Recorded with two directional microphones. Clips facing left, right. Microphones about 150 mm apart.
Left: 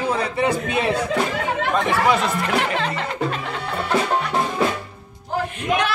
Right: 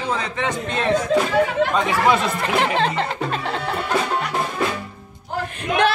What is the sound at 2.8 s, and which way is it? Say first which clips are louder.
Music: right 2 dB; 30° right (ahead or behind).